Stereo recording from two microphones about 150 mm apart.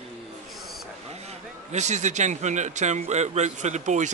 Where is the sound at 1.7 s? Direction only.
50° right (ahead or behind).